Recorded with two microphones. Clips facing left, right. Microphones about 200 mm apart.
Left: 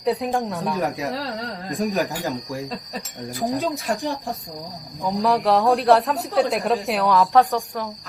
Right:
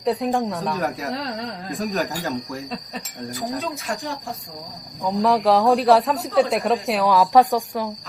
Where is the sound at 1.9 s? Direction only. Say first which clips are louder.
Left 1 dB; 15° left (ahead or behind).